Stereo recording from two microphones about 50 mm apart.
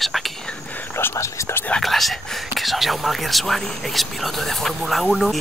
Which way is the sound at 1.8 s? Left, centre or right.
Centre.